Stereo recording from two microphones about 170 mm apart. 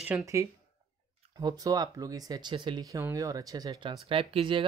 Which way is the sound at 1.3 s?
25° right (ahead or behind).